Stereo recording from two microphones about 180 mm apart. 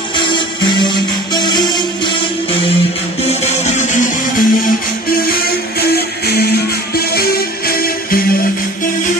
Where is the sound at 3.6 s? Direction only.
40° left (ahead or behind).